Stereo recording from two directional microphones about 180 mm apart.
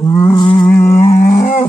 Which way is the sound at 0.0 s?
15° left (ahead or behind).